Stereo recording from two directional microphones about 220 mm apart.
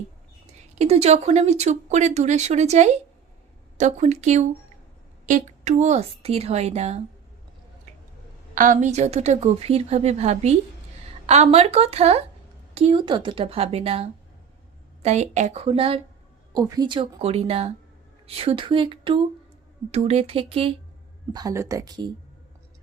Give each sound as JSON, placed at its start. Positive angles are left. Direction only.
{"t": 0.8, "sound": "a woman's voice", "side_deg": -30}
{"t": 8.5, "sound": "a woman's voice", "side_deg": -35}
{"t": 21.3, "sound": "speech", "side_deg": -15}